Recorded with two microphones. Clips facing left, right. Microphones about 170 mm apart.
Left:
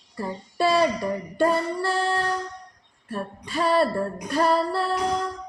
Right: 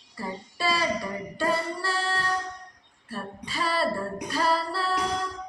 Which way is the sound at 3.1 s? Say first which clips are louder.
Left 5 dB; 50° left (ahead or behind).